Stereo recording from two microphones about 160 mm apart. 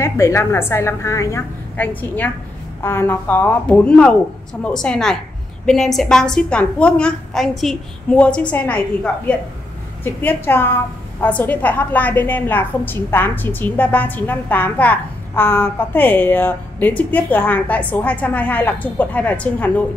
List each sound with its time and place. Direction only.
0.0 s a woman's voice: 15° left (ahead or behind)